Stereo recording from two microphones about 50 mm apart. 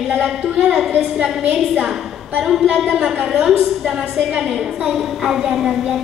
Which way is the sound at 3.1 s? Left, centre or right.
Right.